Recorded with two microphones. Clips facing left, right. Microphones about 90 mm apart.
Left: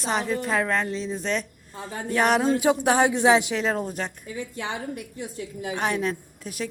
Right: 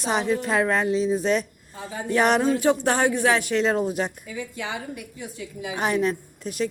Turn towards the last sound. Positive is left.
turn(degrees=0)  # may be behind; listen again after turning